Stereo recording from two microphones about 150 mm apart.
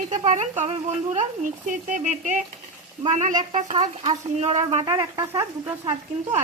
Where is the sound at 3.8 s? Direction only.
40° right (ahead or behind).